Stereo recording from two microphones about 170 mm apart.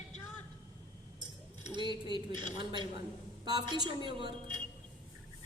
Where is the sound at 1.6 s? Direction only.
25° right (ahead or behind).